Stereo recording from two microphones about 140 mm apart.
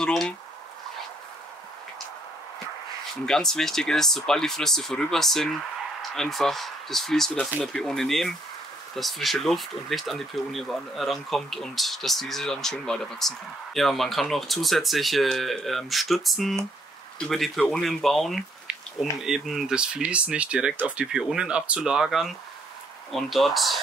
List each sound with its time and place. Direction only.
0.0 s speech: 5° left (ahead or behind)
3.3 s speech: 5° left (ahead or behind)